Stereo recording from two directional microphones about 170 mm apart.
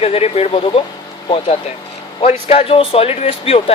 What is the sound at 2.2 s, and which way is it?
Speech, 40° left (ahead or behind).